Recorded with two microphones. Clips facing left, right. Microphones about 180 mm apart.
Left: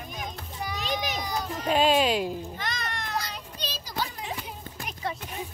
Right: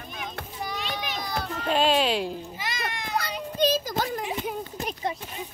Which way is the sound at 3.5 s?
50° right (ahead or behind).